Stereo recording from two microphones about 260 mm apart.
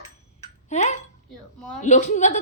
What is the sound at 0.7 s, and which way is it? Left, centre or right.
Speech, left.